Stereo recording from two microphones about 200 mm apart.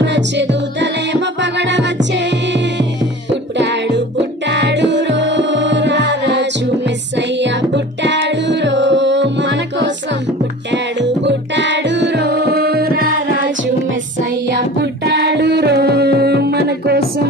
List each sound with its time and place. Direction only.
0.0 s music: 60° right (ahead or behind)
14.5 s music: 60° right (ahead or behind)